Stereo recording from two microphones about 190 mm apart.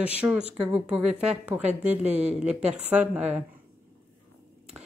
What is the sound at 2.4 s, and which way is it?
Speech, 5° right (ahead or behind).